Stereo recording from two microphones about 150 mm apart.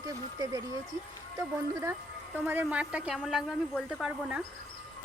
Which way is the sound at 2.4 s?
10° right (ahead or behind).